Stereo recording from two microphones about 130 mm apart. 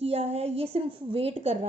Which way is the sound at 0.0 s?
50° right (ahead or behind).